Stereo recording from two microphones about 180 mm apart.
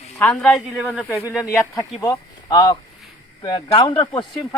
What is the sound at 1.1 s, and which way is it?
Speech, 10° left (ahead or behind).